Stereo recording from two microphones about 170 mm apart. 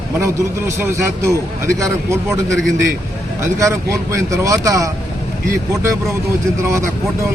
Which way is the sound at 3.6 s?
20° right (ahead or behind).